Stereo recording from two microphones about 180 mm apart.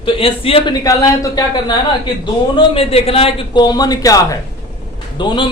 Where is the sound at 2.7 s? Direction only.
30° left (ahead or behind).